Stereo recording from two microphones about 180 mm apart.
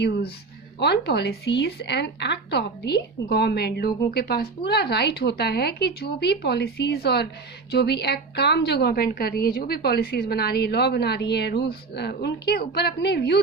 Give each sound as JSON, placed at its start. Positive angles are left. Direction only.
{"t": 0.8, "sound": "a woman's voice", "side_deg": 65}